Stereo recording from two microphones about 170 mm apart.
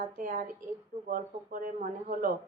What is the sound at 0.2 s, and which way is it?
A woman's voice, 50° right (ahead or behind).